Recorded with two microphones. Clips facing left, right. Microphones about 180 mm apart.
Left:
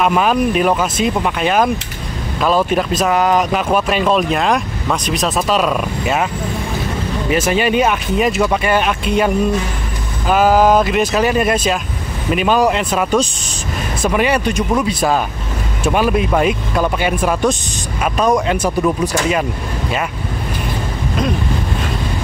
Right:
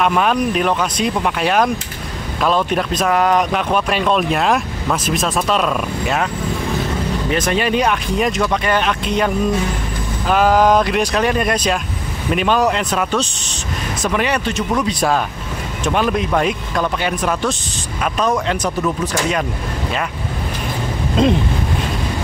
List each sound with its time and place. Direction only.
0.0 s speech: 5° left (ahead or behind)
7.2 s speech: 5° left (ahead or behind)
21.2 s wind noise: 25° right (ahead or behind)